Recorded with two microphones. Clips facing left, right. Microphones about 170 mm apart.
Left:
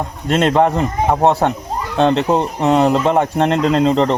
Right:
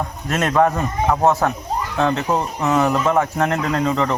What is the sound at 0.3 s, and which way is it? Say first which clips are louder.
A man's voice: left 4 dB; 30° left (ahead or behind).